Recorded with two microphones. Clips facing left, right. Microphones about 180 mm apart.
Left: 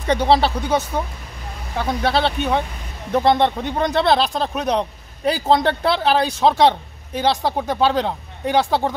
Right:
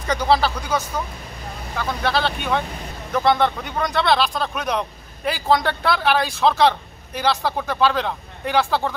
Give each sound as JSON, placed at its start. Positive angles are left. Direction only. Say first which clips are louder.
{"t": 0.0, "sound": "speech", "louder": "left 3 dB", "side_deg": 25}